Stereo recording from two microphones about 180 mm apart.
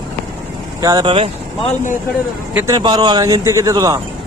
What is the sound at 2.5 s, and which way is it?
Speech, 15° right (ahead or behind).